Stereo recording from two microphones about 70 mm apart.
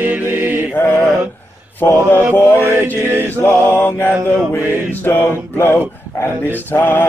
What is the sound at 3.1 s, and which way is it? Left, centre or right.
Mantra, right.